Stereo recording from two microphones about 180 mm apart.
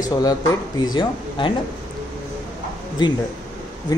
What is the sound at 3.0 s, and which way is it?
Speech, 25° left (ahead or behind).